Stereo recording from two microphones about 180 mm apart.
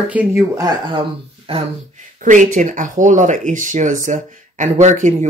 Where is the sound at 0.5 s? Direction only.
20° right (ahead or behind).